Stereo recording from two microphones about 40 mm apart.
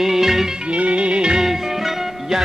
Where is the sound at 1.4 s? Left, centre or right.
Centre.